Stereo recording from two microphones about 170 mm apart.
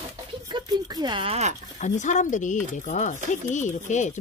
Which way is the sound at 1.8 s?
45° left (ahead or behind).